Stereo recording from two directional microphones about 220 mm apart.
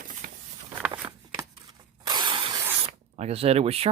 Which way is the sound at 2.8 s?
30° right (ahead or behind).